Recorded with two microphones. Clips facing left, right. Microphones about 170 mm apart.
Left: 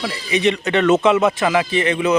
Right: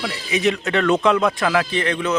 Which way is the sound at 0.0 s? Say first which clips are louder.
Left 2 dB; centre (ahead or behind).